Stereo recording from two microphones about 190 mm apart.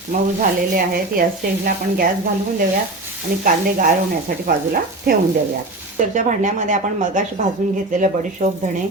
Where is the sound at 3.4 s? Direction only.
50° right (ahead or behind).